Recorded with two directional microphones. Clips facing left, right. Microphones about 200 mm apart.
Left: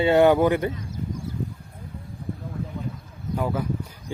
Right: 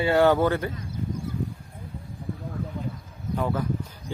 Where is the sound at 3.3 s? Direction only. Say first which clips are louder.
Left 1 dB; 10° left (ahead or behind).